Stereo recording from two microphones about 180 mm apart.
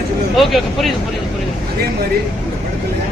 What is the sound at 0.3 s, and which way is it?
Speech, centre (ahead or behind).